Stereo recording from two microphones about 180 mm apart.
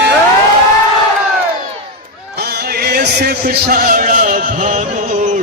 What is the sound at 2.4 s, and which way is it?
Music, 60° right (ahead or behind).